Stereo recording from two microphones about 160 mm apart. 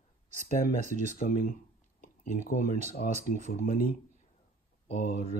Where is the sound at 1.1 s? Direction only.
60° left (ahead or behind).